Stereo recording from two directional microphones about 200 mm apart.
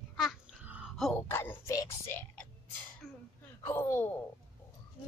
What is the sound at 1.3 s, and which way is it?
Speech, 10° left (ahead or behind).